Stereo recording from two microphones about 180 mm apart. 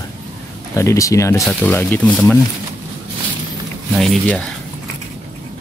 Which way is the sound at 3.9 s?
5° left (ahead or behind).